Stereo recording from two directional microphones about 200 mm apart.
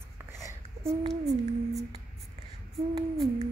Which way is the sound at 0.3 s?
15° right (ahead or behind).